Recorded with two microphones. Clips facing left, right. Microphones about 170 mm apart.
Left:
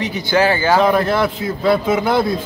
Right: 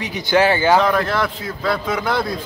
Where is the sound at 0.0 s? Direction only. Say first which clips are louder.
Left 1 dB; 15° right (ahead or behind).